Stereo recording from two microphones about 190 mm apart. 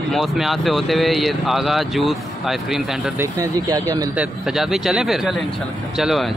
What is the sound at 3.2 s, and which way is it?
Speech, 20° right (ahead or behind).